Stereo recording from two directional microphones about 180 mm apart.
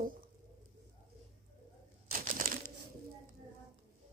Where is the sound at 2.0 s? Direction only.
55° right (ahead or behind).